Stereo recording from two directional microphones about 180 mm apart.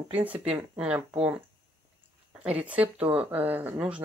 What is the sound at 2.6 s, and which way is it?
Speech, 10° right (ahead or behind).